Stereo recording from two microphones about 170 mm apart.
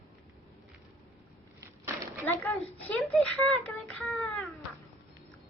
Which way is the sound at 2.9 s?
Centre (ahead or behind).